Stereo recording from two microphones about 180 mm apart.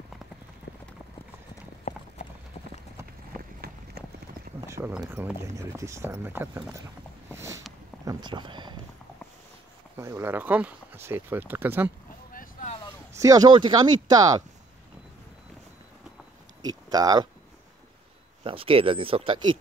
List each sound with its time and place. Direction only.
1.9 s clip-clop: 45° left (ahead or behind)
4.6 s a sound: 15° right (ahead or behind)
4.9 s speech: 10° right (ahead or behind)
7.2 s a sound: 15° right (ahead or behind)
8.0 s speech: 20° right (ahead or behind)
9.9 s speech: 15° right (ahead or behind)
12.3 s boat: 50° left (ahead or behind)
13.1 s speech: 20° right (ahead or behind)
16.6 s a sound: 20° right (ahead or behind)
18.4 s speech: 30° right (ahead or behind)